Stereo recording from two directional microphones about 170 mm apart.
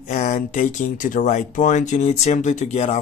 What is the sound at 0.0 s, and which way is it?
Speech, 45° left (ahead or behind).